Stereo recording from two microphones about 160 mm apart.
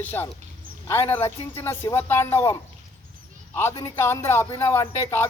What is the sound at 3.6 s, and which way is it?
Speech, 20° left (ahead or behind).